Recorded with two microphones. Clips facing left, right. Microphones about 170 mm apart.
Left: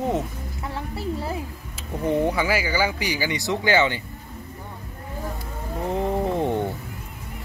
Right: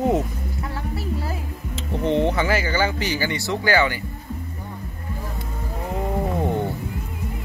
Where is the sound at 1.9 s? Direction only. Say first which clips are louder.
Right 2 dB; 25° right (ahead or behind).